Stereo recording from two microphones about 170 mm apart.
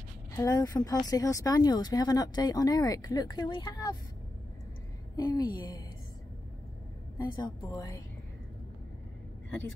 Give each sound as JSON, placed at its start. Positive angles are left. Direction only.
{"t": 0.4, "sound": "speech", "side_deg": 20}
{"t": 5.1, "sound": "speech", "side_deg": 20}
{"t": 7.2, "sound": "speech", "side_deg": 25}